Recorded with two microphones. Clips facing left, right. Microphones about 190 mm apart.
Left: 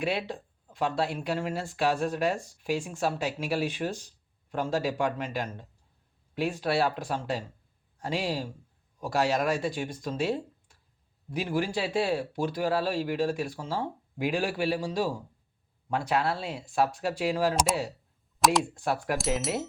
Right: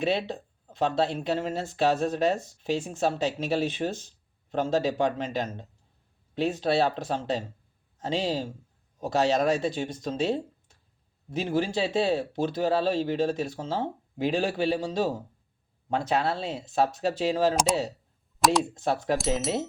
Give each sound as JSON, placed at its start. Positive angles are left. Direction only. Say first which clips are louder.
{"t": 0.0, "sound": "speech", "louder": "right 3 dB", "side_deg": -25}
{"t": 18.3, "sound": "a sound", "louder": "right 1 dB", "side_deg": 0}
{"t": 18.6, "sound": "speech", "louder": "right 2 dB", "side_deg": -20}
{"t": 19.1, "sound": "speech", "louder": "right 4 dB", "side_deg": 0}